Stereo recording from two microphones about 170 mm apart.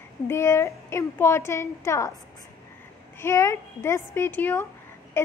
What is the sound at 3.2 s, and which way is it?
A woman's voice, 15° left (ahead or behind).